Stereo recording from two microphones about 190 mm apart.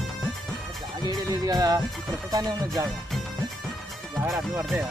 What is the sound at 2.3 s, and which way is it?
Speech, 20° right (ahead or behind).